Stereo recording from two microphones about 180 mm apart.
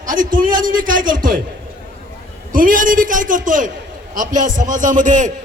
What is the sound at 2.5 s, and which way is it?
A man's voice, 50° right (ahead or behind).